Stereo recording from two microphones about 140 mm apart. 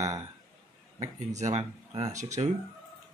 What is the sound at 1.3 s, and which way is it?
Speech, 55° right (ahead or behind).